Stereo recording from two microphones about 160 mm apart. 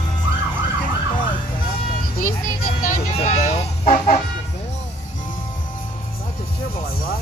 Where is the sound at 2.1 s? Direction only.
60° left (ahead or behind).